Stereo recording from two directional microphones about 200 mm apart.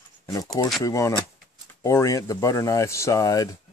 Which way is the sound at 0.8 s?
15° left (ahead or behind).